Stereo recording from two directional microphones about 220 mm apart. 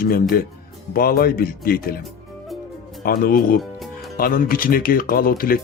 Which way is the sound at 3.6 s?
Centre (ahead or behind).